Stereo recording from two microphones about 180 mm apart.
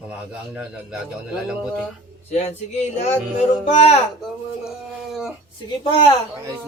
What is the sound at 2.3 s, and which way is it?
Speech, 35° left (ahead or behind).